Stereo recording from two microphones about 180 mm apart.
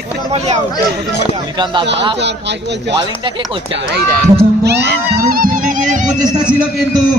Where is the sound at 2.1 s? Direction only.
75° right (ahead or behind).